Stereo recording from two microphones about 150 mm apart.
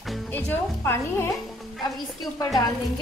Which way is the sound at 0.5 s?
15° left (ahead or behind).